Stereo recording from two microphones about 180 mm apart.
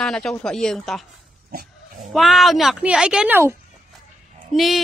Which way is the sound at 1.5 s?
55° right (ahead or behind).